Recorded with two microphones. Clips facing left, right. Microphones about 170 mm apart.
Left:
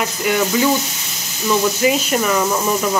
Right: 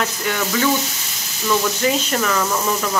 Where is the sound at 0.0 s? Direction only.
15° left (ahead or behind).